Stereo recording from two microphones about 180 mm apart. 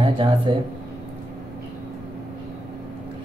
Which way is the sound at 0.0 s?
30° right (ahead or behind).